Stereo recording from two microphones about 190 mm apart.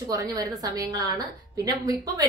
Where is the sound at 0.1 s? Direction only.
20° right (ahead or behind).